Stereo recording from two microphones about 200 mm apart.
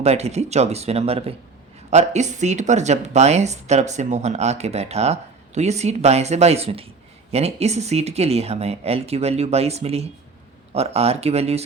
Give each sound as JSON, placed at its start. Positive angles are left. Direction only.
{"t": 0.0, "sound": "speech", "side_deg": -30}